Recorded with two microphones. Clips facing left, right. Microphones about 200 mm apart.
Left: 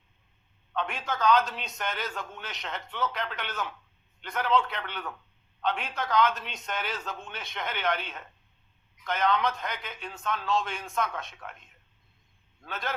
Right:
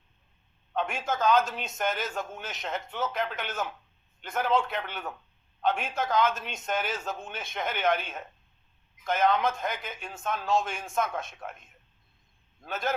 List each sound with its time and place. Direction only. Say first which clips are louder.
0.8 s a man's voice: right 2 dB; 45° right (ahead or behind)